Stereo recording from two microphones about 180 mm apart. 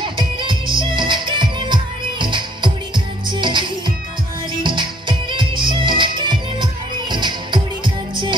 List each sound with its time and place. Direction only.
0.0 s music: 25° right (ahead or behind)